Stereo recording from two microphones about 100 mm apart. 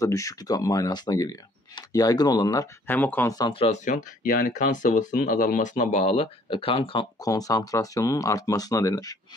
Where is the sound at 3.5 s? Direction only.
70° left (ahead or behind).